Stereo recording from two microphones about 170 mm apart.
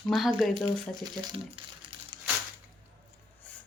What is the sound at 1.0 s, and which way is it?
Crumpling, 25° right (ahead or behind).